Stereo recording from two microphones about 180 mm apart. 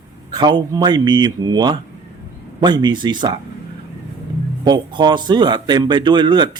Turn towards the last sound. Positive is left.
turn(degrees=-25)  # may be behind; listen again after turning